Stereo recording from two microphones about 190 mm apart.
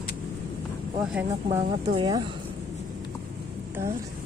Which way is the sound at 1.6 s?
30° right (ahead or behind).